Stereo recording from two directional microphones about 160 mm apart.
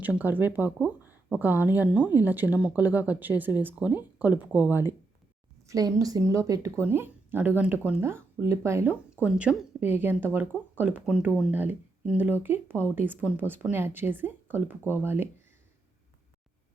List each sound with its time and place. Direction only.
0.0 s speech: 10° right (ahead or behind)